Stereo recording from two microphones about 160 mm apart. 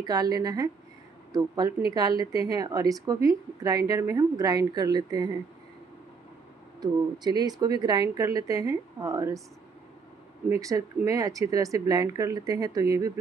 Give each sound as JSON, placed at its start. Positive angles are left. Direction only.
{"t": 0.0, "sound": "speech", "side_deg": -25}
{"t": 6.8, "sound": "speech", "side_deg": -25}
{"t": 10.6, "sound": "speech", "side_deg": -20}